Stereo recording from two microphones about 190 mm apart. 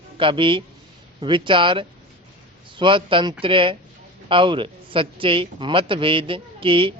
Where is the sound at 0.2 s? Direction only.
25° right (ahead or behind).